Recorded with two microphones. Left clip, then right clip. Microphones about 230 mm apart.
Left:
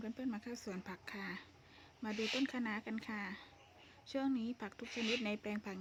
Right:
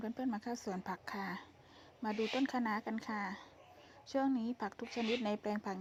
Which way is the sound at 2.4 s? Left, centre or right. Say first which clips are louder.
Right 4 dB; centre.